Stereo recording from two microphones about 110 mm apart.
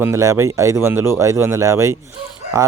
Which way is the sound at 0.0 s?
30° right (ahead or behind).